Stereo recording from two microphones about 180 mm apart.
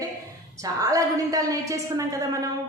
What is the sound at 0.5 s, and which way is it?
A woman's voice, 20° right (ahead or behind).